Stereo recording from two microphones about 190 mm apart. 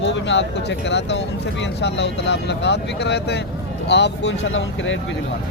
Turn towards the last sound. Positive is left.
turn(degrees=80)